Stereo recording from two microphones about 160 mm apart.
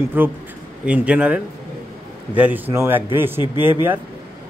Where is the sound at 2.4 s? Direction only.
10° right (ahead or behind).